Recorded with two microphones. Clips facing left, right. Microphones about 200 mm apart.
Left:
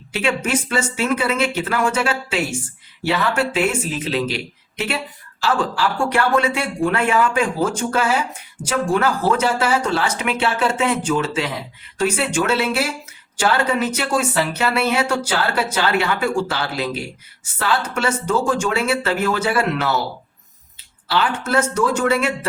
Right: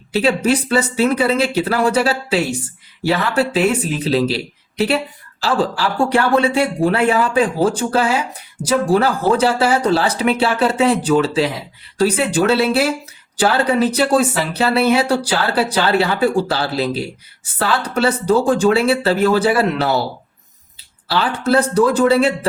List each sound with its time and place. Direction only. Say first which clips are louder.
0.1 s speech: right 5 dB; 35° right (ahead or behind)
21.1 s speech: right 3 dB; 35° right (ahead or behind)